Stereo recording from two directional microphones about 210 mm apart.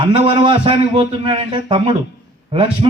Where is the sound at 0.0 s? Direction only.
20° right (ahead or behind).